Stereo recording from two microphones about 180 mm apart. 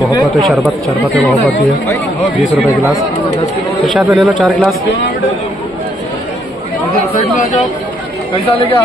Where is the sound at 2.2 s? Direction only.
Centre (ahead or behind).